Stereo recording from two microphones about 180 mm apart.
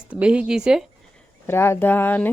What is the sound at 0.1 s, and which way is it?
Speech, 5° right (ahead or behind).